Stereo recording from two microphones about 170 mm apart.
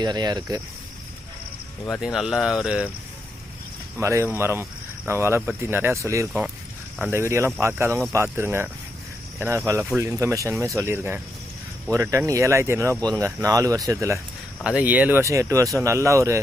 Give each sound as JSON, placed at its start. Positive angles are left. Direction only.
{"t": 0.0, "sound": "speech", "side_deg": -25}
{"t": 2.0, "sound": "speech", "side_deg": 0}
{"t": 4.0, "sound": "speech", "side_deg": -15}
{"t": 14.6, "sound": "speech", "side_deg": -5}